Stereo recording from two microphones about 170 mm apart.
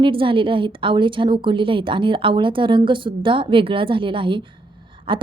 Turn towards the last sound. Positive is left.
turn(degrees=-30)  # may be behind; listen again after turning